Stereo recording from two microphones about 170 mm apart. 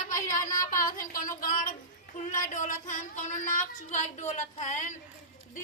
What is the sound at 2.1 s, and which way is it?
Speech, 50° left (ahead or behind).